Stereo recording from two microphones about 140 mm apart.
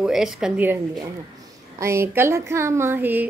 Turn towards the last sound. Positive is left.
turn(degrees=-15)  # may be behind; listen again after turning